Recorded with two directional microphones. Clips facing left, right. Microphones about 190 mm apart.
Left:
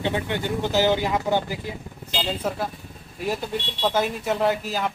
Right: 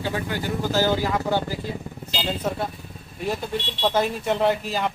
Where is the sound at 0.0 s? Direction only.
25° left (ahead or behind).